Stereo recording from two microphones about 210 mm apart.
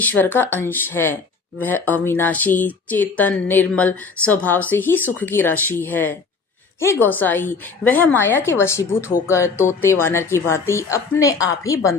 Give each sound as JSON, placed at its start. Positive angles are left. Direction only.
{"t": 0.0, "sound": "speech", "side_deg": 10}